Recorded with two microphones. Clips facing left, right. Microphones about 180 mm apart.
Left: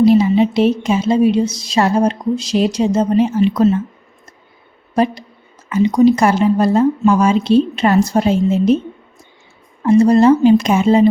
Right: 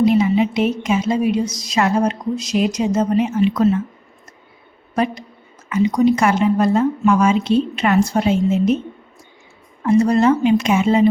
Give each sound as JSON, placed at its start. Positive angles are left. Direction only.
{"t": 0.0, "sound": "a woman's voice", "side_deg": 35}
{"t": 5.6, "sound": "a woman's voice", "side_deg": 30}
{"t": 9.8, "sound": "a woman's voice", "side_deg": 30}